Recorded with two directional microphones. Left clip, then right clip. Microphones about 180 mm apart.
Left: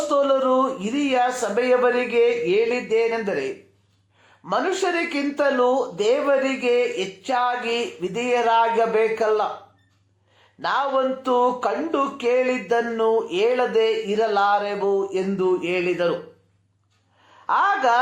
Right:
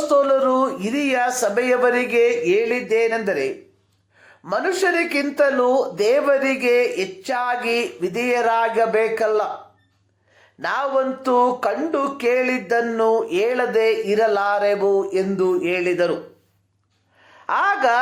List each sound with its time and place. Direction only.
0.1 s a sound: 35° right (ahead or behind)
1.0 s speech: 30° right (ahead or behind)
4.4 s speech: 30° right (ahead or behind)
10.6 s speech: 35° right (ahead or behind)
17.4 s a woman's voice: 35° right (ahead or behind)